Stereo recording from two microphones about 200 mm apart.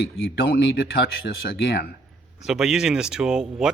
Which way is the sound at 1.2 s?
60° left (ahead or behind).